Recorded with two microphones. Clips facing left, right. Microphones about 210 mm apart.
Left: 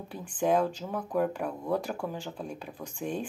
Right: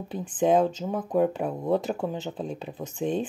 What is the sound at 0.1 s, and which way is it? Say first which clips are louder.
Speech: right 5 dB; 20° right (ahead or behind).